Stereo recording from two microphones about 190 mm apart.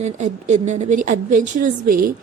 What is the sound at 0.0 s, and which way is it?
A woman's voice, 40° right (ahead or behind).